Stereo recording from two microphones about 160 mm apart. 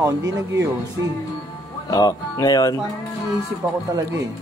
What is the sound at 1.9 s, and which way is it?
Speech, 20° left (ahead or behind).